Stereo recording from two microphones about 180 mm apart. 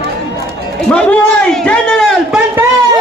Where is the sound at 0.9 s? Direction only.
5° left (ahead or behind).